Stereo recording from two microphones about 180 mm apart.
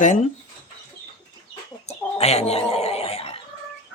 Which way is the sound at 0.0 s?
45° left (ahead or behind).